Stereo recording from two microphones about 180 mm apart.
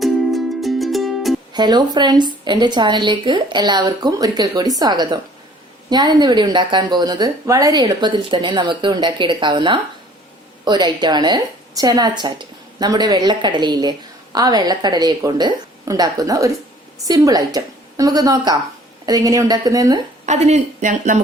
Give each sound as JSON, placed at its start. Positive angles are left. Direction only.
{"t": 0.0, "sound": "music", "side_deg": 0}
{"t": 1.5, "sound": "a woman's voice", "side_deg": -25}
{"t": 20.2, "sound": "speech", "side_deg": -40}